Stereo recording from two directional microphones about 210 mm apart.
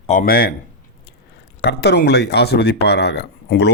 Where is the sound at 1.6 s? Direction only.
50° left (ahead or behind).